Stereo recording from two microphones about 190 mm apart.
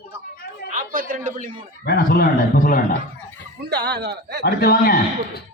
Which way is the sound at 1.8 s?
50° left (ahead or behind).